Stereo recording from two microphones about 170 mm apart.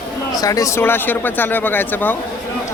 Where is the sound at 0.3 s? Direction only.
20° left (ahead or behind).